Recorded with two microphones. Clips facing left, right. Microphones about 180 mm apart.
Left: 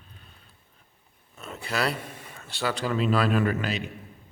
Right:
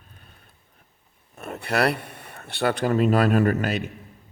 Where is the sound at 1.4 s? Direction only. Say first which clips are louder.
Right 6 dB; 60° right (ahead or behind).